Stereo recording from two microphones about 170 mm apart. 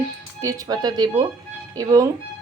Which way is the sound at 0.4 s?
20° right (ahead or behind).